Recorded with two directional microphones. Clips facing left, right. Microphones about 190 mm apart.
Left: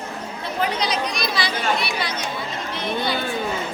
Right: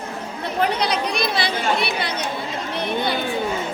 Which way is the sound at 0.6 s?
60° right (ahead or behind).